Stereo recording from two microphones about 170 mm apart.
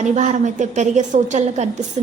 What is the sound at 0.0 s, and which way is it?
A woman's voice, 45° right (ahead or behind).